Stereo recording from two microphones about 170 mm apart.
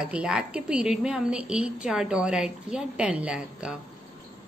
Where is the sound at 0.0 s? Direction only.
5° right (ahead or behind).